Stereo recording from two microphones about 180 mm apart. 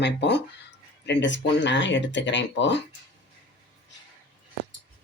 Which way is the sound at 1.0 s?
85° left.